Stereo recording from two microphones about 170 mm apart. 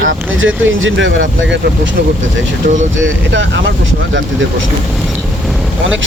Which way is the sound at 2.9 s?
90° right.